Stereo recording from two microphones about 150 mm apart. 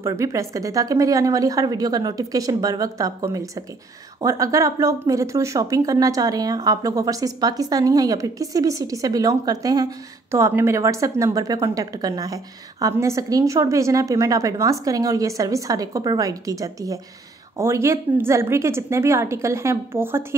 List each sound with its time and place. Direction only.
0.0 s a woman's voice: 20° right (ahead or behind)